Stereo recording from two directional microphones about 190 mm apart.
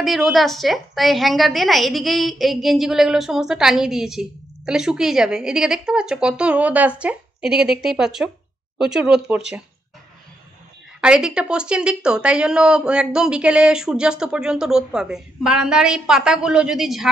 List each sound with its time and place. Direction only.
0.0 s a woman's voice: centre (ahead or behind)
11.0 s a woman's voice: 5° right (ahead or behind)